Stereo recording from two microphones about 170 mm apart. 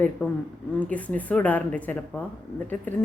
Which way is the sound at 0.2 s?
10° left (ahead or behind).